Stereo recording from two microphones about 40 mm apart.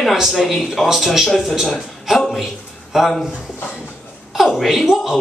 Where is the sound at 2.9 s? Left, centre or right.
Centre.